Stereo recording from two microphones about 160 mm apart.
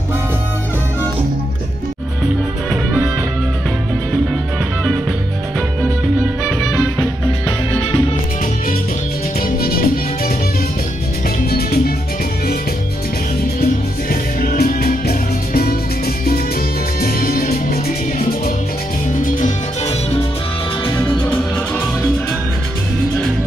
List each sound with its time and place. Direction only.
9.4 s music: 70° left (ahead or behind)
14.0 s music: 60° left (ahead or behind)
17.0 s music: 70° left (ahead or behind)